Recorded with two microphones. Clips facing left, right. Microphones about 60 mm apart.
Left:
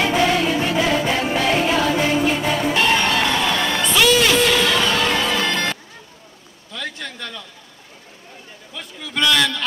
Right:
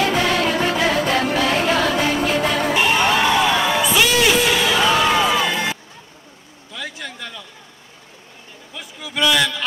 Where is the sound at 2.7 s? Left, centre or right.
Centre.